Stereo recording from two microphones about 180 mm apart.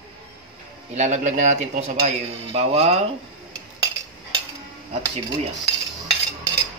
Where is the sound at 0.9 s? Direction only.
40° right (ahead or behind).